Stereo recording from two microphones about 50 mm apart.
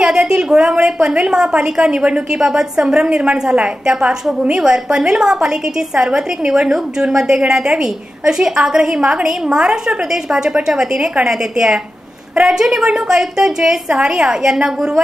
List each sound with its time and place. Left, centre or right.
0.0 s a woman's voice: centre